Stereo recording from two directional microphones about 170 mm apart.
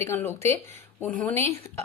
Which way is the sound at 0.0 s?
15° left (ahead or behind).